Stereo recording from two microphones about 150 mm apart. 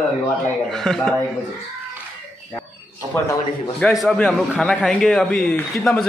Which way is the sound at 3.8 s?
Centre (ahead or behind).